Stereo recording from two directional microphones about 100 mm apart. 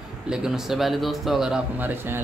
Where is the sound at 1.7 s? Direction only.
20° right (ahead or behind).